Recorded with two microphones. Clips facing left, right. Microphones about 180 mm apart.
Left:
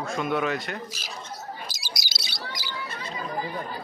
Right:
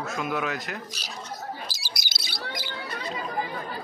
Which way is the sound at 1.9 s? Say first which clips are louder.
Even; 55° right (ahead or behind).